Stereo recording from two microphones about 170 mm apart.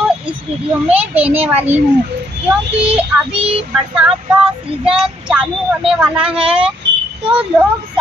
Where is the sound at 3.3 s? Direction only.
30° right (ahead or behind).